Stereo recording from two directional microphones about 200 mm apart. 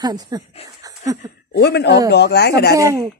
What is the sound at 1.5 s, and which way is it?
Speech, 55° left (ahead or behind).